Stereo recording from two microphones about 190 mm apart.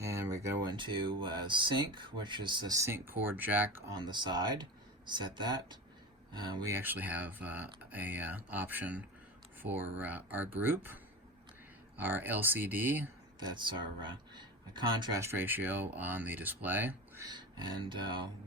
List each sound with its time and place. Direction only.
0.0 s speech: 15° right (ahead or behind)
13.6 s speech: 25° right (ahead or behind)
17.2 s speech: 20° right (ahead or behind)